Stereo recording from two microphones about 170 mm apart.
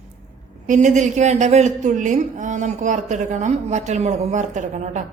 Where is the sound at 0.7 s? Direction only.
45° right (ahead or behind).